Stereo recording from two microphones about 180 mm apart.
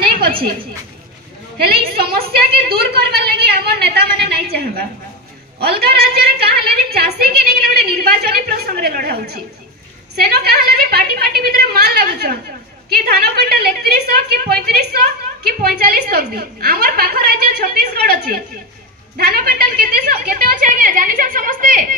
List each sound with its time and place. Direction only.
0.0 s a sound: 55° right (ahead or behind)
1.6 s a woman's voice: 60° right (ahead or behind)
5.6 s a woman's voice: 60° right (ahead or behind)